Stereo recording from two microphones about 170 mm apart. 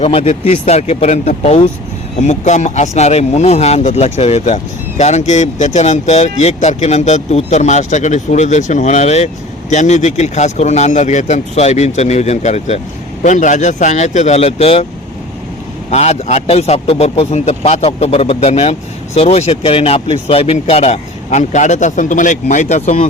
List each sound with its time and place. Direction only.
0.0 s speech: 35° left (ahead or behind)
15.9 s speech: 40° left (ahead or behind)